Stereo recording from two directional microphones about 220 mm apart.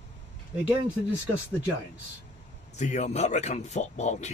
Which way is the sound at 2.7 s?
30° left (ahead or behind).